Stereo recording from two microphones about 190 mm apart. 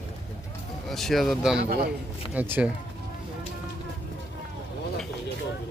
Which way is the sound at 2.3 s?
10° right (ahead or behind).